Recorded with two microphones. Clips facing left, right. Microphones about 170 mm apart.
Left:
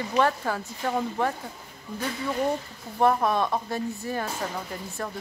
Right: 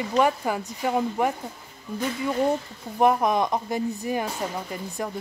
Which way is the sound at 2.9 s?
15° right (ahead or behind).